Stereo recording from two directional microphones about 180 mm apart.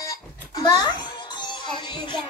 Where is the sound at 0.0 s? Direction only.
20° left (ahead or behind).